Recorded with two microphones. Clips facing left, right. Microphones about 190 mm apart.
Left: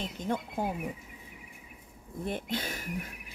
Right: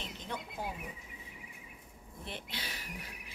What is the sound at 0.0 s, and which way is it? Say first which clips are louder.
Speech: left 9 dB; 50° left (ahead or behind).